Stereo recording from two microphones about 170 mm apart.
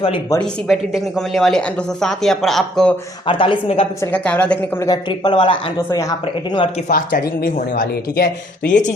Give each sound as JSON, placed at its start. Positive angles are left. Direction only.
{"t": 0.7, "sound": "speech", "side_deg": 0}
{"t": 3.2, "sound": "a woman's voice", "side_deg": 30}
{"t": 4.0, "sound": "a woman's voice", "side_deg": 10}
{"t": 4.9, "sound": "speech", "side_deg": 25}
{"t": 5.9, "sound": "speech", "side_deg": 20}
{"t": 6.2, "sound": "speech", "side_deg": 30}
{"t": 6.8, "sound": "speech", "side_deg": 55}